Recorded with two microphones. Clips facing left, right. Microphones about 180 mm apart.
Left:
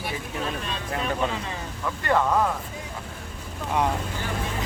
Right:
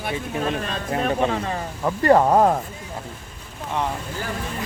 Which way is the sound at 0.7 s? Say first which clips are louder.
Right 5 dB; 45° right (ahead or behind).